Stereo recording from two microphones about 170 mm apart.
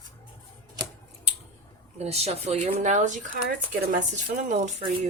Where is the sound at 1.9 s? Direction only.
40° right (ahead or behind).